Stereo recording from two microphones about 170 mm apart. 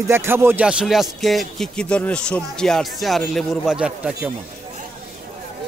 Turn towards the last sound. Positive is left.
turn(degrees=-5)  # may be behind; listen again after turning